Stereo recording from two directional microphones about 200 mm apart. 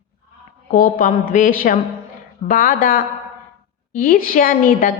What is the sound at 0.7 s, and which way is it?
A woman's voice, 40° left (ahead or behind).